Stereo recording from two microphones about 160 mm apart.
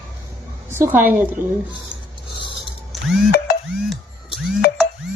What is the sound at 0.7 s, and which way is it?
Speech, 15° right (ahead or behind).